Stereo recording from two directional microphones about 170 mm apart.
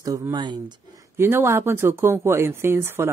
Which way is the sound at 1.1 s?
15° right (ahead or behind).